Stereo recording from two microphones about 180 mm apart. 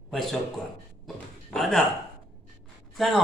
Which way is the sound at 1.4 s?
5° left (ahead or behind).